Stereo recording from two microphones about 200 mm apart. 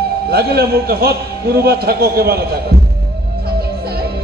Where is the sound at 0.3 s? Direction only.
50° right (ahead or behind).